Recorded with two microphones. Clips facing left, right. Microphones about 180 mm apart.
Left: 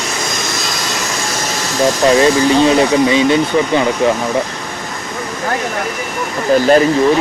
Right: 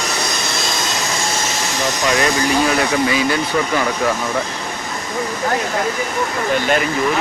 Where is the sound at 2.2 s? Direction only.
25° left (ahead or behind).